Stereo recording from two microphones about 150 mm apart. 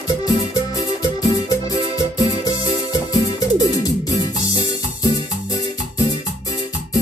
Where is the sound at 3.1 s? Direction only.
25° left (ahead or behind).